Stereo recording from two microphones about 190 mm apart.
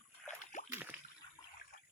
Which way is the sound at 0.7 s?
10° right (ahead or behind).